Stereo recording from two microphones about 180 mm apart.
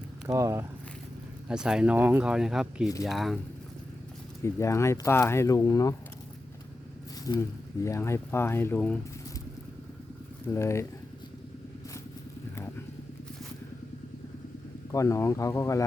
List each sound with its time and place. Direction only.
0.3 s speech: 15° right (ahead or behind)
1.5 s speech: 5° right (ahead or behind)
4.4 s speech: 15° left (ahead or behind)
7.3 s speech: 20° left (ahead or behind)
10.5 s speech: 15° left (ahead or behind)
14.9 s speech: 15° left (ahead or behind)